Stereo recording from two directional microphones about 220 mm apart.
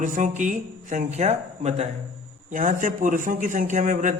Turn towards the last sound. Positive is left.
turn(degrees=-35)  # may be behind; listen again after turning